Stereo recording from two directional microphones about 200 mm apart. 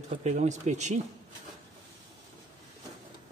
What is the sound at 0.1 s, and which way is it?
Speech, 35° right (ahead or behind).